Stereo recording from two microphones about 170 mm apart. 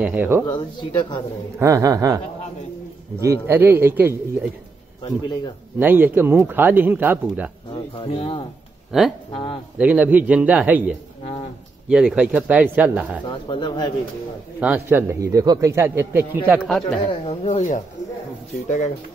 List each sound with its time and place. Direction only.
0.0 s a man's voice: 10° right (ahead or behind)
0.5 s speech: 25° left (ahead or behind)
1.6 s a man's voice: 20° right (ahead or behind)
5.8 s a man's voice: 10° right (ahead or behind)
7.7 s speech: 30° left (ahead or behind)
8.9 s speech: centre (ahead or behind)
9.3 s speech: 30° left (ahead or behind)
9.8 s a man's voice: 10° right (ahead or behind)
13.3 s speech: 25° left (ahead or behind)
14.6 s a man's voice: 10° right (ahead or behind)
17.3 s speech: 40° left (ahead or behind)